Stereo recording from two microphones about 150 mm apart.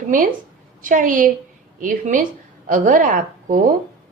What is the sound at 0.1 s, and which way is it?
A woman's voice, 65° right (ahead or behind).